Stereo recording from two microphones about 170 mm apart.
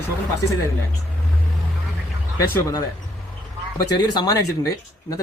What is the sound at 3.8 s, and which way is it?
Speech, 25° left (ahead or behind).